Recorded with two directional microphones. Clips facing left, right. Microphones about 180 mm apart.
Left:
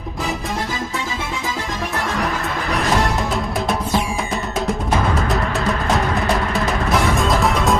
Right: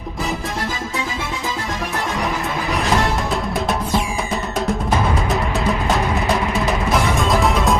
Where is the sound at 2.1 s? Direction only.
Centre (ahead or behind).